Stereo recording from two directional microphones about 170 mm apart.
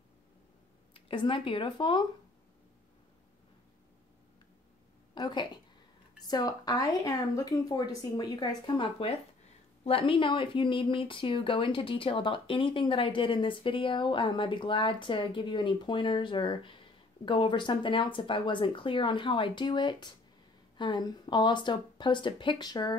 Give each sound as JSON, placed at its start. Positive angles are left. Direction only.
{"t": 0.9, "sound": "speech", "side_deg": 30}
{"t": 5.1, "sound": "a woman's voice", "side_deg": 25}